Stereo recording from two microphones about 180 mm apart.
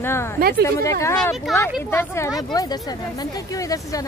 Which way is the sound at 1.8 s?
15° left (ahead or behind).